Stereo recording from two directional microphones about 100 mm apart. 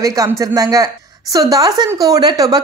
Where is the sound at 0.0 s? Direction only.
35° right (ahead or behind).